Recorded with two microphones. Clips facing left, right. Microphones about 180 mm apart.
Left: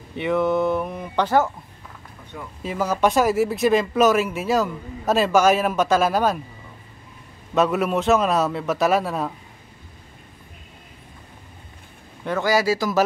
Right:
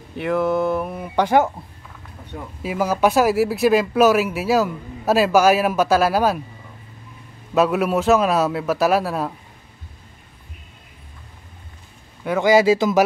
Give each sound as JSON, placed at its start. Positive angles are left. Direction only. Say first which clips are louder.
{"t": 0.2, "sound": "speech", "louder": "right 1 dB", "side_deg": 0}
{"t": 2.6, "sound": "speech", "louder": "right 2 dB", "side_deg": -10}
{"t": 7.5, "sound": "speech", "louder": "right 2 dB", "side_deg": -5}
{"t": 12.3, "sound": "speech", "louder": "right 5 dB", "side_deg": -20}